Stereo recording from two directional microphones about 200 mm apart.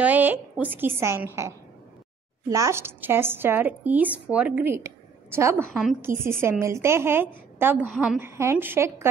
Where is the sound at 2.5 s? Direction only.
15° right (ahead or behind).